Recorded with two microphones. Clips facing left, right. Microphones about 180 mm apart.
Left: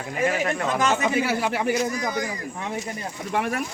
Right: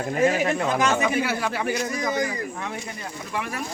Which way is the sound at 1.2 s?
10° left (ahead or behind).